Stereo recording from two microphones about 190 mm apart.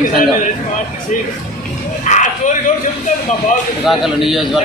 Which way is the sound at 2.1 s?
40° left (ahead or behind).